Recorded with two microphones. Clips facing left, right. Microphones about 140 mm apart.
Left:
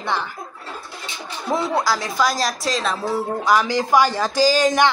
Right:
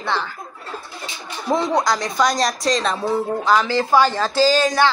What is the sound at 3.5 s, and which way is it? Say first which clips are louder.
Speech: even; 15° left (ahead or behind).